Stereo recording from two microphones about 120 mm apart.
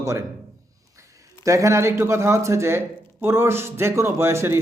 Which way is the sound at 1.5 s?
25° right (ahead or behind).